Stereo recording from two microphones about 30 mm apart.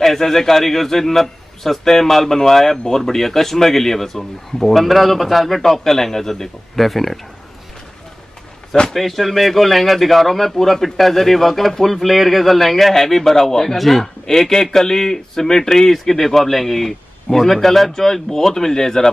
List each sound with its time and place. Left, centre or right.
0.0 s a man's voice: centre
8.9 s a man's voice: centre
13.7 s speech: centre
14.2 s a man's voice: centre
16.1 s a man's voice: centre